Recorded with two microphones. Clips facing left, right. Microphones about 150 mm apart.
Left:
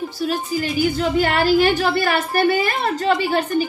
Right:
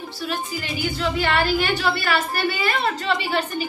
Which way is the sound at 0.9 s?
45° left (ahead or behind).